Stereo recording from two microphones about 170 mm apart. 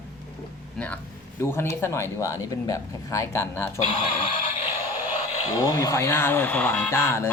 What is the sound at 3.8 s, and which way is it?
Speech, 40° left (ahead or behind).